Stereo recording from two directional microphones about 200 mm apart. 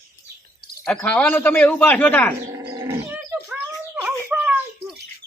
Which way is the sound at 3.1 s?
10° right (ahead or behind).